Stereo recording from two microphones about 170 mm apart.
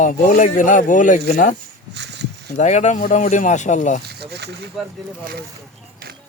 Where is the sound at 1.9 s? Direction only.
85° right.